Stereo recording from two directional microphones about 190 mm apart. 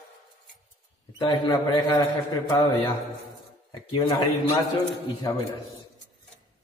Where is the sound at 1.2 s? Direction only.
25° left (ahead or behind).